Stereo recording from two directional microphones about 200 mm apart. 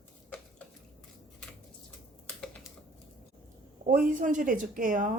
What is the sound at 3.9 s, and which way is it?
Speech, 40° right (ahead or behind).